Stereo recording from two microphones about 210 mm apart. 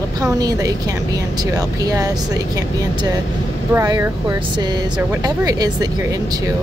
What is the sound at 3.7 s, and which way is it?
A woman's voice, 10° right (ahead or behind).